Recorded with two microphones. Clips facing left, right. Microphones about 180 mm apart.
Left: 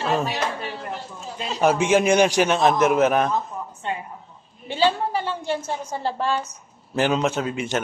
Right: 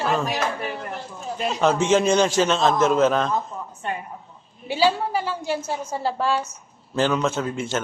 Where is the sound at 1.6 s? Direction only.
10° left (ahead or behind).